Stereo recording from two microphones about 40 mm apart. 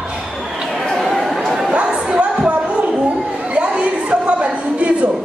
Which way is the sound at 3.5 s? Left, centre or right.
Right.